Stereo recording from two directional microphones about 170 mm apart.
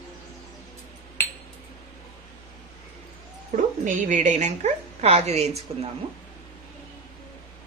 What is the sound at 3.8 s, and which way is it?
Speech, 45° right (ahead or behind).